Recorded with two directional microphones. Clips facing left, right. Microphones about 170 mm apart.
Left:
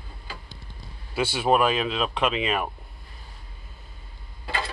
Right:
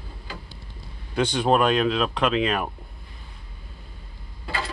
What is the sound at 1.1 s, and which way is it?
Speech, 5° left (ahead or behind).